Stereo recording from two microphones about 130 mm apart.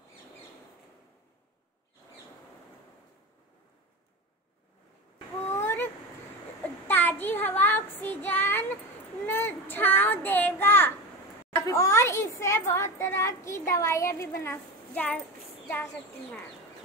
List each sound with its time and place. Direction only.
5.5 s a sound: 15° left (ahead or behind)
6.9 s child singing: 15° left (ahead or behind)
11.5 s a child's voice: 25° left (ahead or behind)